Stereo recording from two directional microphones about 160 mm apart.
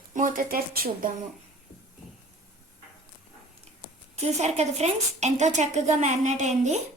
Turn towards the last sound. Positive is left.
turn(degrees=-45)  # may be behind; listen again after turning